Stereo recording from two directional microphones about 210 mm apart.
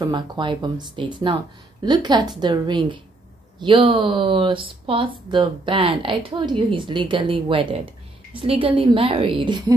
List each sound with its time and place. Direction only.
0.0 s speech: 20° right (ahead or behind)